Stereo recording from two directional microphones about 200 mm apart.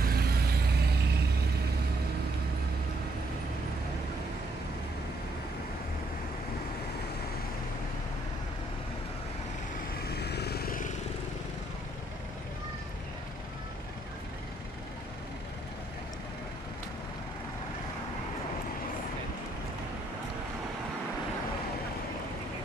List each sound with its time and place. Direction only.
0.0 s vehicle: 50° right (ahead or behind)
10.0 s vehicle: 55° left (ahead or behind)